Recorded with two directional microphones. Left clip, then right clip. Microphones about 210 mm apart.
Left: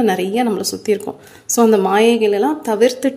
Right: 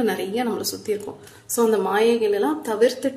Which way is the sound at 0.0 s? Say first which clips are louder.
Left 7 dB; 35° left (ahead or behind).